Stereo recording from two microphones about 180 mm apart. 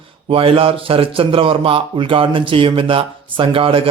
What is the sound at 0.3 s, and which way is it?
A man's voice, 30° right (ahead or behind).